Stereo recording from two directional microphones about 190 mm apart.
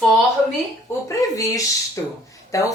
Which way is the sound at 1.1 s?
15° left (ahead or behind).